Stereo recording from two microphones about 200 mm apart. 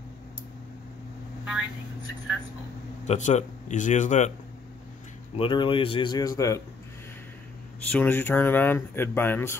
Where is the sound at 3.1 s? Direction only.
35° left (ahead or behind).